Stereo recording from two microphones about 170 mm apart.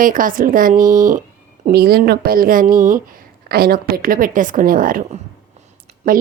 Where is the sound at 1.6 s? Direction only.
65° right (ahead or behind).